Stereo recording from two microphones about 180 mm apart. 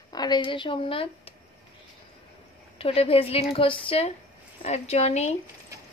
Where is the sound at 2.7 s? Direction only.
30° left (ahead or behind).